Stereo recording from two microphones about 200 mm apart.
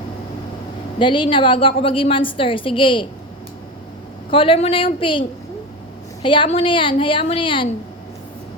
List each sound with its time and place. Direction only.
0.9 s a woman's voice: 25° left (ahead or behind)
4.3 s a woman's voice: 25° left (ahead or behind)
6.2 s a woman's voice: 25° left (ahead or behind)